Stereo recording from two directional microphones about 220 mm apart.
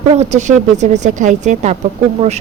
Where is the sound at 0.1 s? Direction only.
30° right (ahead or behind).